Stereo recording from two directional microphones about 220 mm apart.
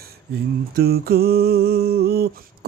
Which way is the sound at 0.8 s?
45° right (ahead or behind).